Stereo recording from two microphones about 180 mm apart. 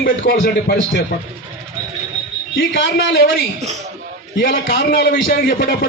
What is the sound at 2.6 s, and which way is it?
Speech, 85° left.